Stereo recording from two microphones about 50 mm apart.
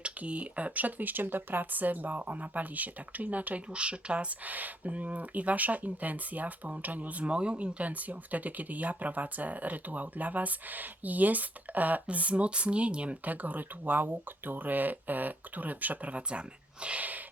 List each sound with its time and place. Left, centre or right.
0.0 s speech: right
4.4 s speech: right
16.8 s a sound: right